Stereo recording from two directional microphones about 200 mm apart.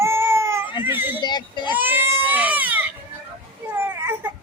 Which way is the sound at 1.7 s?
10° right (ahead or behind).